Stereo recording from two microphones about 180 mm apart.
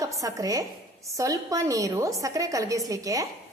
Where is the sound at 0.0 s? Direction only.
20° right (ahead or behind).